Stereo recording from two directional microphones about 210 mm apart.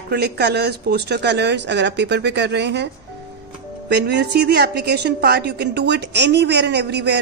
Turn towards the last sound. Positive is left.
turn(degrees=-55)  # may be behind; listen again after turning